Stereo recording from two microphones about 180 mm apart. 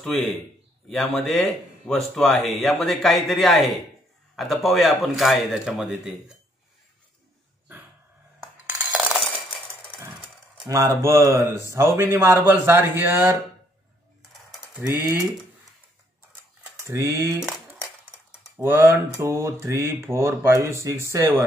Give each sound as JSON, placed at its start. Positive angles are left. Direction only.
{"t": 0.8, "sound": "speech", "side_deg": 0}
{"t": 8.6, "sound": "cutlery", "side_deg": -5}
{"t": 10.6, "sound": "speech", "side_deg": -15}
{"t": 14.8, "sound": "speech", "side_deg": -15}
{"t": 16.7, "sound": "speech", "side_deg": -15}
{"t": 17.4, "sound": "coin", "side_deg": -5}
{"t": 18.6, "sound": "speech", "side_deg": -15}